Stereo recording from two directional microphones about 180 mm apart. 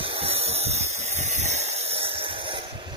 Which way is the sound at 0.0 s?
30° right (ahead or behind).